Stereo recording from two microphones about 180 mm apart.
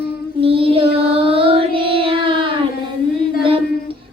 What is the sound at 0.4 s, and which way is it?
Child singing, 30° right (ahead or behind).